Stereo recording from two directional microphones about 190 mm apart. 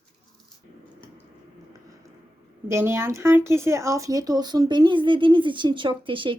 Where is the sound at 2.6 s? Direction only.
15° right (ahead or behind).